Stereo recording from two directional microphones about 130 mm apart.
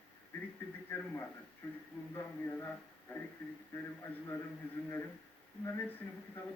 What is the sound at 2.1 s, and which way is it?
A man's voice, 15° left (ahead or behind).